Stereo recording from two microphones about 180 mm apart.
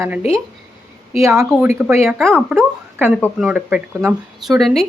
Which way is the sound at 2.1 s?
Centre (ahead or behind).